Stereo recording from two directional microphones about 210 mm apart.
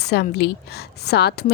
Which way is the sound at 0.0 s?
50° left (ahead or behind).